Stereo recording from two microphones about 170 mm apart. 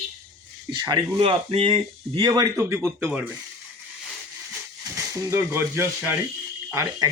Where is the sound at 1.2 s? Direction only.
35° right (ahead or behind); by 3.3 s 10° right (ahead or behind).